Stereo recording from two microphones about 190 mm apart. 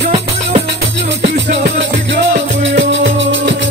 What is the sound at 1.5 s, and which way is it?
Music, 70° right (ahead or behind).